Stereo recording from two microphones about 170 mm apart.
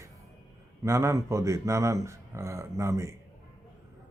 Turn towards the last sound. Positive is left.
turn(degrees=-15)  # may be behind; listen again after turning